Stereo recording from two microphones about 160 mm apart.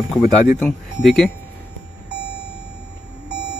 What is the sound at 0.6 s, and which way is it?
Speech, 5° left (ahead or behind).